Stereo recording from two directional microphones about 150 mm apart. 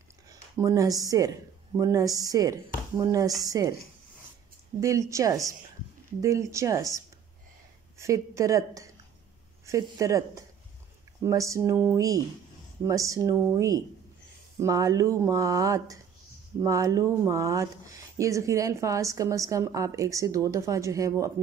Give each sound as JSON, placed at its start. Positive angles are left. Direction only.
{"t": 0.3, "sound": "speech", "side_deg": -25}
{"t": 4.7, "sound": "speech", "side_deg": -20}
{"t": 8.0, "sound": "speech", "side_deg": -20}